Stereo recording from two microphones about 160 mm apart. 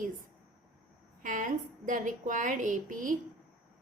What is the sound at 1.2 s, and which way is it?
A woman's voice, 55° right (ahead or behind).